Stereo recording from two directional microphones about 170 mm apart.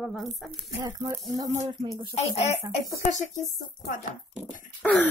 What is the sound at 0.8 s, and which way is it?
A child's voice, 15° right (ahead or behind).